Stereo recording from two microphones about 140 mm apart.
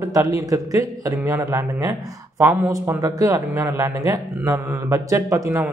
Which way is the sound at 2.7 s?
25° right (ahead or behind).